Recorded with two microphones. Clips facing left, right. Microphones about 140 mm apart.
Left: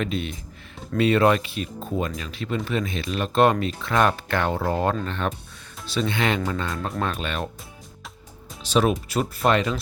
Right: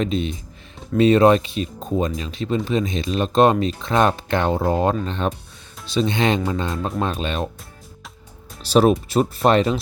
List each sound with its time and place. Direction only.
0.0 s speech: 25° right (ahead or behind)
8.7 s speech: 35° right (ahead or behind)